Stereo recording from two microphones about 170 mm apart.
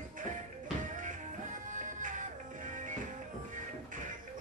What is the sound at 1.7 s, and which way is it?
Music, 50° right (ahead or behind).